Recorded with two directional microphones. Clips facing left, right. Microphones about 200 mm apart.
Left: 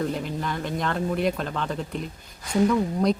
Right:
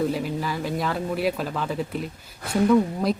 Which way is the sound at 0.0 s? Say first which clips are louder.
Right 3 dB; 5° right (ahead or behind).